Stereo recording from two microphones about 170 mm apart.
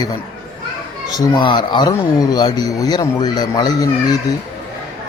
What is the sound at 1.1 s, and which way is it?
Speech, 25° left (ahead or behind).